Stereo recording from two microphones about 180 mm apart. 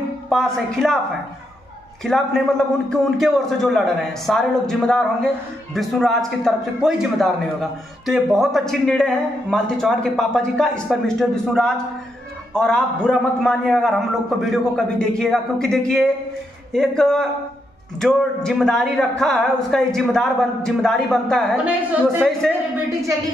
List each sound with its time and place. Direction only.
0.3 s a man's voice: centre (ahead or behind)
2.0 s a man's voice: 5° left (ahead or behind)